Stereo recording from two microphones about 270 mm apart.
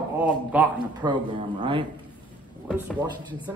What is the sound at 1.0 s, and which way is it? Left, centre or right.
Speech, centre.